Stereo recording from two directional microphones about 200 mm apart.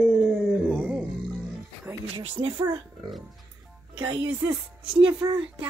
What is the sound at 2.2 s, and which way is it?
Speech, 25° right (ahead or behind).